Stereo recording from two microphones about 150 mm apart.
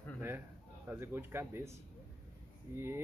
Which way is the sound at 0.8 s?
15° right (ahead or behind).